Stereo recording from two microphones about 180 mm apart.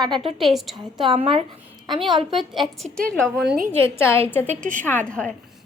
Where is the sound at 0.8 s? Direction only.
25° right (ahead or behind).